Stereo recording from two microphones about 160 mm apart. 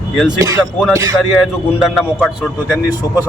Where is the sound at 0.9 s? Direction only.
20° right (ahead or behind).